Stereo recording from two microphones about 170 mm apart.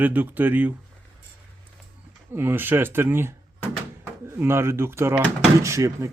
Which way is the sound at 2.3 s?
15° right (ahead or behind).